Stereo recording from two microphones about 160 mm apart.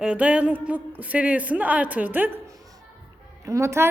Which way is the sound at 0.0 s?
5° right (ahead or behind).